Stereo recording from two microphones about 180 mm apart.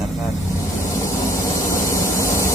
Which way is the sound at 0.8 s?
15° left (ahead or behind).